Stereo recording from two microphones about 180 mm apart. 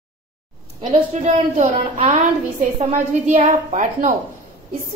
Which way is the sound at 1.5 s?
40° right (ahead or behind).